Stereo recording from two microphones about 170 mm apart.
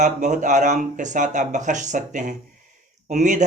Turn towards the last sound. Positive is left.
turn(degrees=-45)  # may be behind; listen again after turning